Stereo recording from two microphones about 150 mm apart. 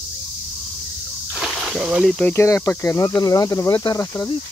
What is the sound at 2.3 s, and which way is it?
Speech, 15° left (ahead or behind).